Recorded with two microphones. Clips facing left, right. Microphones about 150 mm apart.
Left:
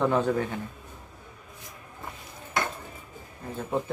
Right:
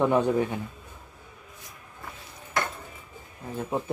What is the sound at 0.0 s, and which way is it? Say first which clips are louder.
Speech: right 2 dB; 15° right (ahead or behind).